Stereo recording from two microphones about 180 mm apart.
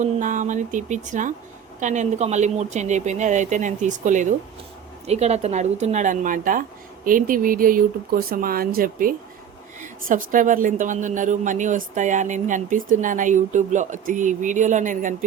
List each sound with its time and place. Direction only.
0.0 s a woman's voice: 45° right (ahead or behind)